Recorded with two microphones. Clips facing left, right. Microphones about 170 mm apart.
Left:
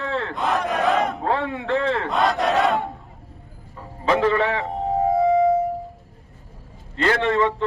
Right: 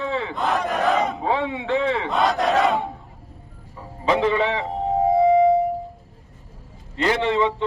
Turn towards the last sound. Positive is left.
turn(degrees=0)  # may be behind; listen again after turning